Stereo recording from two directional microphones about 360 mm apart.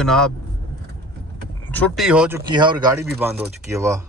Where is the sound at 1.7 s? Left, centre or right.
Centre.